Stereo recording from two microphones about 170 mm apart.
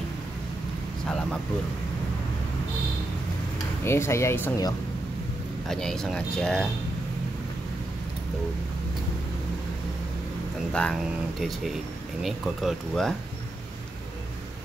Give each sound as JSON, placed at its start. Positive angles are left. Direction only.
{"t": 1.0, "sound": "a sound", "side_deg": 5}
{"t": 3.8, "sound": "speech", "side_deg": 15}
{"t": 5.7, "sound": "speech", "side_deg": 5}
{"t": 10.7, "sound": "speech", "side_deg": 5}